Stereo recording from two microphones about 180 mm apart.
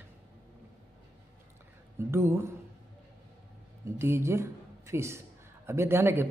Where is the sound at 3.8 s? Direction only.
15° right (ahead or behind).